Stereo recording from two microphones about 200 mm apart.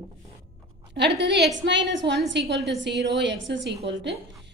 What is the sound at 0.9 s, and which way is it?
A woman's voice, 60° right (ahead or behind).